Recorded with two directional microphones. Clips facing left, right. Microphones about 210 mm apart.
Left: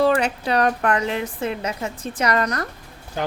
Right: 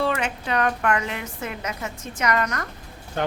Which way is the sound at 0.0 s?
35° left (ahead or behind).